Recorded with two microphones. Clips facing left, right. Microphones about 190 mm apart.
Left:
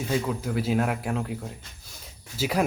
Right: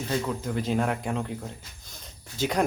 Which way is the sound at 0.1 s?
5° left (ahead or behind).